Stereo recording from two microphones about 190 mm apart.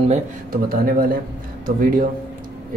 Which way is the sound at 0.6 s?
50° right (ahead or behind).